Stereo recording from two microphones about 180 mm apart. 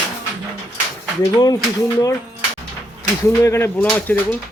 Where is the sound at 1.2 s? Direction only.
20° left (ahead or behind).